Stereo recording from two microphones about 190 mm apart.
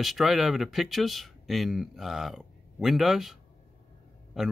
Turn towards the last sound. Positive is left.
turn(degrees=0)  # may be behind; listen again after turning